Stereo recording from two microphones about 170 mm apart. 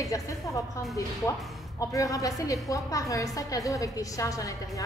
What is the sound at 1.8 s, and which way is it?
A woman's voice, 20° left (ahead or behind).